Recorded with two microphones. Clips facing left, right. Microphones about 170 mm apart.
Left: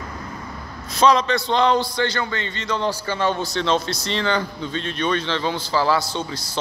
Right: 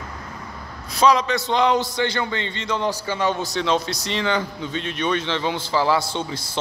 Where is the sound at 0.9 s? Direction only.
10° right (ahead or behind).